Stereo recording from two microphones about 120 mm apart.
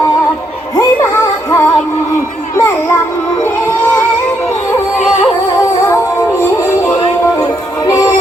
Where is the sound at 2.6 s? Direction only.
20° left (ahead or behind).